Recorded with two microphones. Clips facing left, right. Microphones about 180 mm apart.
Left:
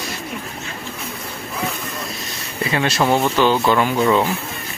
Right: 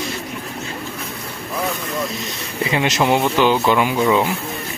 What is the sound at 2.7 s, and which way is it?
Speech, 20° right (ahead or behind).